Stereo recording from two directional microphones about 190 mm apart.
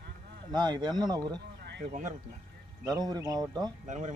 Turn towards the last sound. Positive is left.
turn(degrees=-40)  # may be behind; listen again after turning